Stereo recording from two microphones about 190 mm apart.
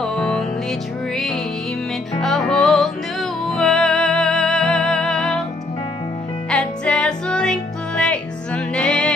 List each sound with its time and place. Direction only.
0.0 s music: 5° left (ahead or behind)
6.5 s music: 5° left (ahead or behind)